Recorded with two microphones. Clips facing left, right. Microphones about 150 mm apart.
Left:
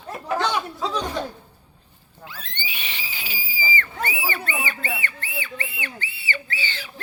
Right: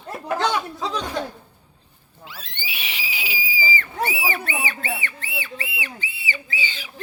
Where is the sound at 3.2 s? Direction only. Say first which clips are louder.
Right 3 dB; 10° right (ahead or behind).